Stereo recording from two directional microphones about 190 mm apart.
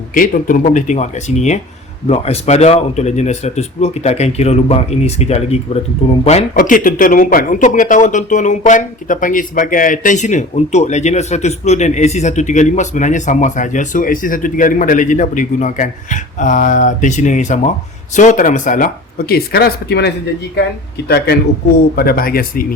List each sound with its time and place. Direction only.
0.1 s speech: 45° left (ahead or behind)
6.6 s speech: 45° left (ahead or behind); by 20.1 s 60° left (ahead or behind)
21.9 s speech: 50° left (ahead or behind)